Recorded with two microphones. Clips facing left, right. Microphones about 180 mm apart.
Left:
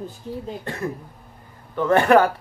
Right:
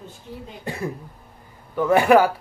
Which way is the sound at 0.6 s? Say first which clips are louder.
Even; 10° right (ahead or behind).